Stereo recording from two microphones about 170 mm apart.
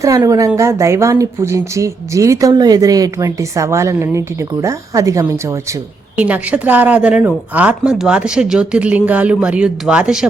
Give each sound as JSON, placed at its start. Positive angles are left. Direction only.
{"t": 0.0, "sound": "a woman's voice", "side_deg": -20}